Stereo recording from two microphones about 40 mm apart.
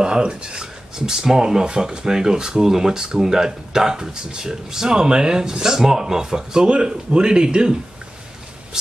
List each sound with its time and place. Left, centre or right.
0.0 s speech: right